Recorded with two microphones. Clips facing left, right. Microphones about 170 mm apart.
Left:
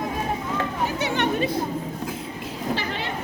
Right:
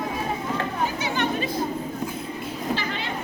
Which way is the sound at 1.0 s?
65° left (ahead or behind).